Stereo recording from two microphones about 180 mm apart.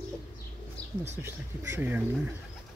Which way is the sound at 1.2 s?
15° right (ahead or behind).